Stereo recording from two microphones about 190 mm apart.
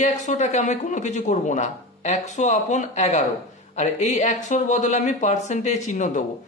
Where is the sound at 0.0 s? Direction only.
35° left (ahead or behind).